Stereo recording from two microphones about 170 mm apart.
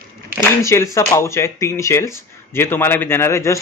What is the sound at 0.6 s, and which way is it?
A man's voice, 15° left (ahead or behind).